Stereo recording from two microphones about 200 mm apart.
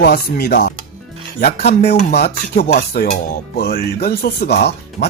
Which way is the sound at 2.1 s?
50° left (ahead or behind).